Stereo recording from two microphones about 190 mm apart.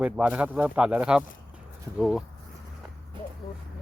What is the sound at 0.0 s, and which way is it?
Speech, 5° right (ahead or behind).